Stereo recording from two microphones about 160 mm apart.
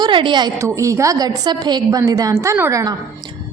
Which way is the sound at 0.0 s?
30° right (ahead or behind).